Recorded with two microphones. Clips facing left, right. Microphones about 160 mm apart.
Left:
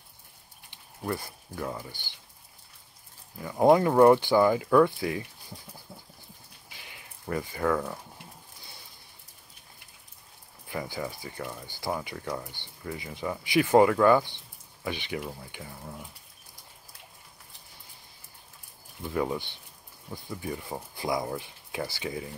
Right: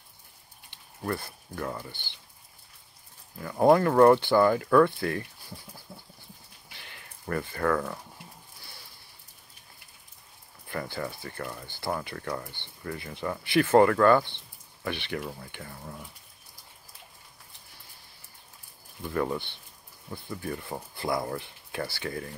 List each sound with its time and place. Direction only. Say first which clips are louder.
1.0 s speech: even; 10° left (ahead or behind)
3.3 s speech: even; 10° left (ahead or behind)
5.9 s a sound: right 1 dB; 20° left (ahead or behind)
6.7 s a sound: even; 10° left (ahead or behind)
10.7 s speech: even; 10° left (ahead or behind)
19.0 s speech: even; 10° left (ahead or behind)